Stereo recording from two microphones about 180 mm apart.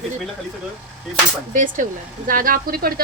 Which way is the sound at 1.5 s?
45° right (ahead or behind).